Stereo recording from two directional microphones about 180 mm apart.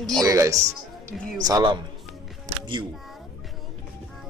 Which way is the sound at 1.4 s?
25° right (ahead or behind).